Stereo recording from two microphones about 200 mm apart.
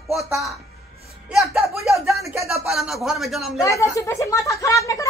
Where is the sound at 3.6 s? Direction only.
15° left (ahead or behind).